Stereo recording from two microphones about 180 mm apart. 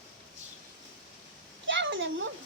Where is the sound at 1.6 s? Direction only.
90° right.